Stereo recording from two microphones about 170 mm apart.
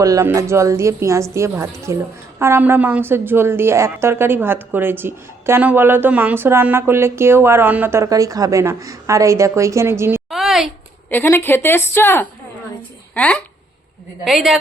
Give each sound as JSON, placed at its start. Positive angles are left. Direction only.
{"t": 0.0, "sound": "a woman's voice", "side_deg": -20}
{"t": 10.2, "sound": "a sound", "side_deg": 0}
{"t": 11.1, "sound": "a woman's voice", "side_deg": 10}